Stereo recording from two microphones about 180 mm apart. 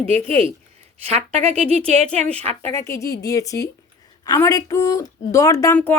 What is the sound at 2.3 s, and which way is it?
A woman's voice, 10° left (ahead or behind).